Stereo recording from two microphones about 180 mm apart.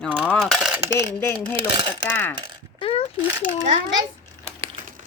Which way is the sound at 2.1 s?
10° left (ahead or behind).